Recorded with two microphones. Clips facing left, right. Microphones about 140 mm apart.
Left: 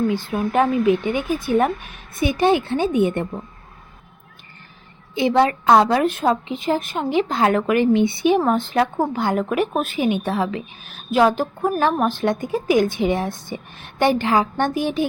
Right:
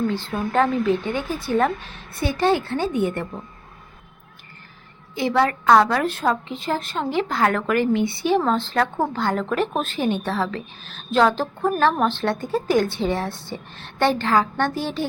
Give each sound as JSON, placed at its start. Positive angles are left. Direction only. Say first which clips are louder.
{"t": 0.1, "sound": "a woman's voice", "louder": "left 3 dB", "side_deg": 15}
{"t": 5.1, "sound": "a woman's voice", "louder": "left 3 dB", "side_deg": 20}